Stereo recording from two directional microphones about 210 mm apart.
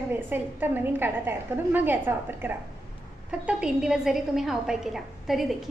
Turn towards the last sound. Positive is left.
turn(degrees=0)  # may be behind; listen again after turning